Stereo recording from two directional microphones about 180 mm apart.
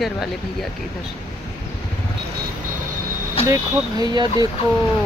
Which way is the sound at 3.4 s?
20° right (ahead or behind).